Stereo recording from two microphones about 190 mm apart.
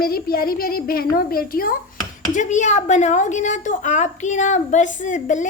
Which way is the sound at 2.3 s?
40° left (ahead or behind).